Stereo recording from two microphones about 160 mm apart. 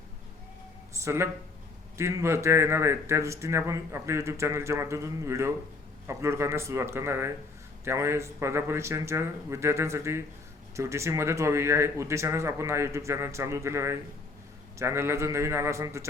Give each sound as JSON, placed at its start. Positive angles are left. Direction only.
{"t": 0.9, "sound": "speech", "side_deg": -15}